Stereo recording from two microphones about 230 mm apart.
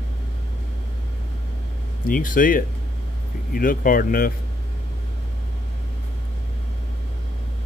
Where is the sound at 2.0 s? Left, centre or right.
Left.